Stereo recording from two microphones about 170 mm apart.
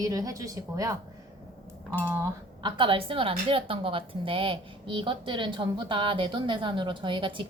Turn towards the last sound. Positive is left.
turn(degrees=-30)  # may be behind; listen again after turning